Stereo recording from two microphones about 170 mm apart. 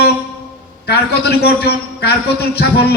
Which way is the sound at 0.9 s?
70° left (ahead or behind).